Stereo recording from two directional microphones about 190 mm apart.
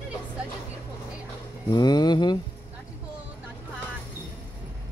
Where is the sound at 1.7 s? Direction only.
20° left (ahead or behind).